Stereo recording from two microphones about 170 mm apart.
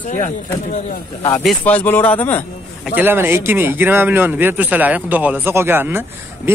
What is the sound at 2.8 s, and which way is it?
Speech, 10° right (ahead or behind).